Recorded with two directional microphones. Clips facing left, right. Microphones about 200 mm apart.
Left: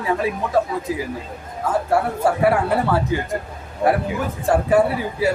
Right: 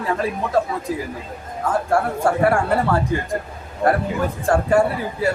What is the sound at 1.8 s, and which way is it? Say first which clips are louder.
Speech: left 1 dB; 5° left (ahead or behind).